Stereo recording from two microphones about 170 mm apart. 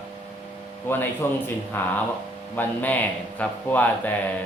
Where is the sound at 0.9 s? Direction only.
10° left (ahead or behind).